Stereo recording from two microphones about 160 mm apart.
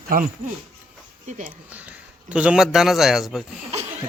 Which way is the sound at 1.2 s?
50° right (ahead or behind).